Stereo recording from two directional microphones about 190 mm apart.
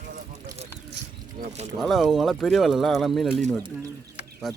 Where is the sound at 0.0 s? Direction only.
40° right (ahead or behind).